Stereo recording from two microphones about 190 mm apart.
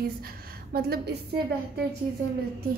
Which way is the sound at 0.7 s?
55° right (ahead or behind).